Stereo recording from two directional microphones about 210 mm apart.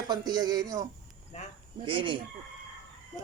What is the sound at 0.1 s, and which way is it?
Speech, 20° right (ahead or behind).